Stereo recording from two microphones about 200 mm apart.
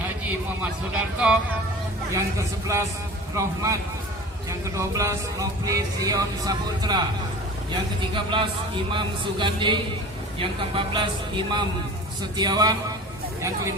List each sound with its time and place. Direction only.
2.1 s speech: 15° right (ahead or behind)